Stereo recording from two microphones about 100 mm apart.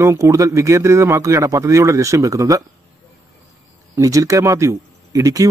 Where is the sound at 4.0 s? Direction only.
35° right (ahead or behind).